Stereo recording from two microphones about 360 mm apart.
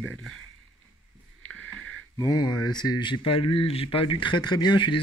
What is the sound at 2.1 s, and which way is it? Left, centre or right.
Speech, centre.